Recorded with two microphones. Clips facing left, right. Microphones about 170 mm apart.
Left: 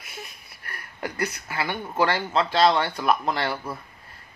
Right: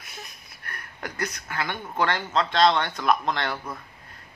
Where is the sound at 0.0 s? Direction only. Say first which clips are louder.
Left 2 dB; 5° left (ahead or behind).